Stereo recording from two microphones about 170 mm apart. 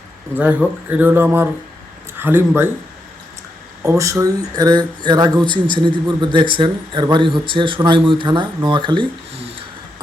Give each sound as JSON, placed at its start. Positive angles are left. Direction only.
{"t": 0.3, "sound": "speech", "side_deg": -10}
{"t": 3.8, "sound": "speech", "side_deg": -20}